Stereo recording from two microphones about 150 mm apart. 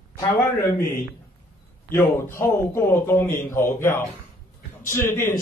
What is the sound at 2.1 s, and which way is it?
A man's voice, 15° left (ahead or behind).